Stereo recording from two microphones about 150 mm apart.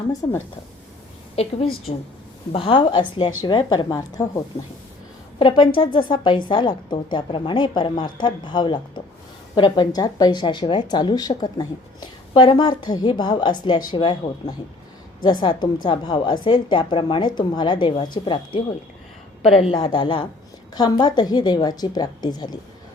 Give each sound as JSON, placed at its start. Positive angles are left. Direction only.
{"t": 1.4, "sound": "a woman's voice", "side_deg": 40}
{"t": 5.4, "sound": "a woman's voice", "side_deg": 35}
{"t": 19.4, "sound": "a woman's voice", "side_deg": 40}